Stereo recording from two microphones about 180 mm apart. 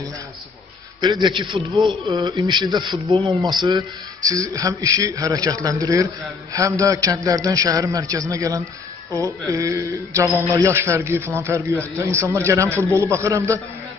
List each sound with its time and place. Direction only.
1.3 s speech: 25° right (ahead or behind)
1.8 s speech: centre (ahead or behind)
2.0 s a man's voice: 25° right (ahead or behind)